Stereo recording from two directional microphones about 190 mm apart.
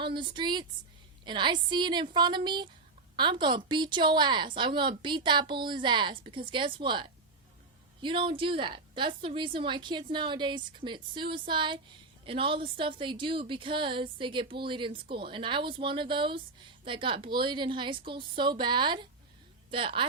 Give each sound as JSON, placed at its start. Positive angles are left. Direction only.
{"t": 0.0, "sound": "a woman's voice", "side_deg": -25}